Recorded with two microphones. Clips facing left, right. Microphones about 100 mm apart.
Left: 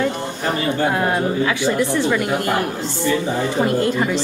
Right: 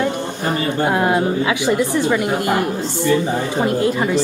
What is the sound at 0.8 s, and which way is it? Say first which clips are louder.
A woman's voice: right 4 dB; 10° right (ahead or behind).